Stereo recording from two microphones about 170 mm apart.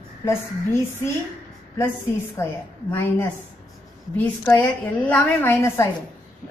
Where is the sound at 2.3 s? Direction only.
15° left (ahead or behind).